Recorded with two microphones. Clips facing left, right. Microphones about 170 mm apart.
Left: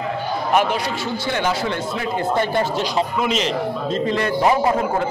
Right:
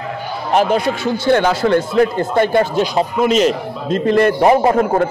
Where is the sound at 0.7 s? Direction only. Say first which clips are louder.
Right 7 dB; 50° right (ahead or behind).